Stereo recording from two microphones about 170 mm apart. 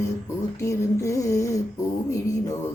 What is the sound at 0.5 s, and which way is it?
Music, 15° left (ahead or behind).